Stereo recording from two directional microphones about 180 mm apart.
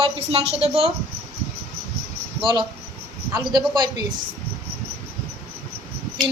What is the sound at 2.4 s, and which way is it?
Speech, 25° right (ahead or behind).